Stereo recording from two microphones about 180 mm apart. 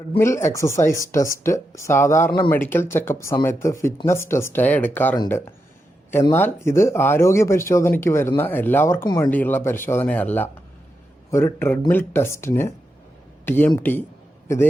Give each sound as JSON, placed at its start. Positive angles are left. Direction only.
{"t": 0.2, "sound": "speech", "side_deg": 15}
{"t": 6.3, "sound": "a man's voice", "side_deg": 15}